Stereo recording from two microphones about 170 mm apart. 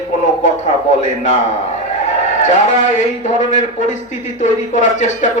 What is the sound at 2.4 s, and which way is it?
Speech, 45° left (ahead or behind).